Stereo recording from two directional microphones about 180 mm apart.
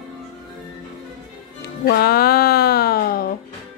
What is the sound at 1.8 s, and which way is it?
A woman's voice, 60° left (ahead or behind).